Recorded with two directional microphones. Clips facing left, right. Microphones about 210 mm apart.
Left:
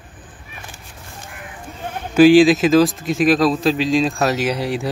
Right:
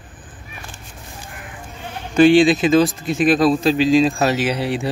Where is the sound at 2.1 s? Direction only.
Centre (ahead or behind).